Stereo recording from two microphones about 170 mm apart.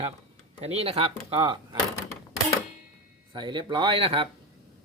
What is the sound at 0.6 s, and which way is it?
Speech, 35° right (ahead or behind).